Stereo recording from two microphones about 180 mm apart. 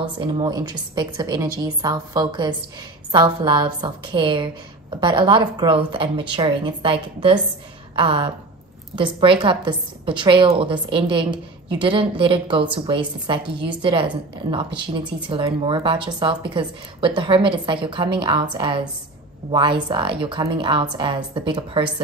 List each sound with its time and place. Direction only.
0.0 s a woman's voice: 25° right (ahead or behind)